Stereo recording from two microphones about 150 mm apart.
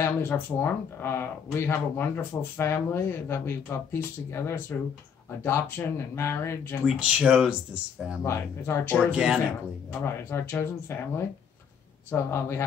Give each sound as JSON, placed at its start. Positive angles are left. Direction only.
{"t": 0.0, "sound": "speech", "side_deg": 15}
{"t": 6.9, "sound": "speech", "side_deg": -5}
{"t": 8.2, "sound": "speech", "side_deg": 15}
{"t": 8.9, "sound": "speech", "side_deg": 0}
{"t": 10.0, "sound": "speech", "side_deg": 15}